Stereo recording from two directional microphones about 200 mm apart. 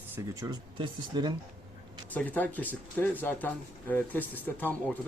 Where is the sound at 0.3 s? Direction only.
20° right (ahead or behind).